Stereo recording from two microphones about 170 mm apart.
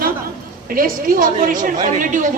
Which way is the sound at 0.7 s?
55° right (ahead or behind).